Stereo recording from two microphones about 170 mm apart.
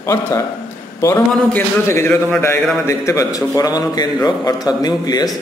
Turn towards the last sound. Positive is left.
turn(degrees=20)  # may be behind; listen again after turning